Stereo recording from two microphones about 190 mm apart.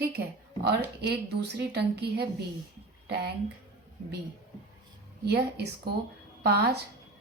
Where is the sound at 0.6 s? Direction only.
60° right (ahead or behind).